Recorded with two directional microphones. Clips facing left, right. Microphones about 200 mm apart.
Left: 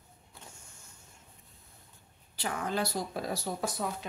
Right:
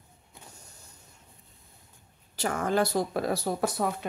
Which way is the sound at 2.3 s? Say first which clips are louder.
Right 7 dB; 45° right (ahead or behind).